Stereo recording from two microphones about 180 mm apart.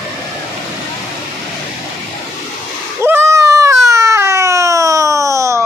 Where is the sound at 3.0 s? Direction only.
15° right (ahead or behind).